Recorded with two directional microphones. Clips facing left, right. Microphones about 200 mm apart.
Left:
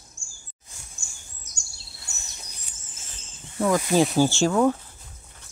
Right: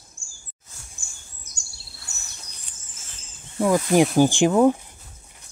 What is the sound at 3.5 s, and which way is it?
Speech, 15° right (ahead or behind).